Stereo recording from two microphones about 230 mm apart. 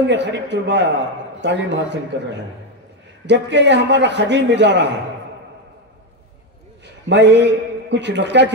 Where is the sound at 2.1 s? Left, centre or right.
Right.